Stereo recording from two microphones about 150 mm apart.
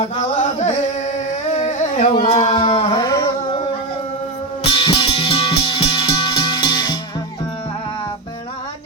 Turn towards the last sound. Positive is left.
turn(degrees=30)  # may be behind; listen again after turning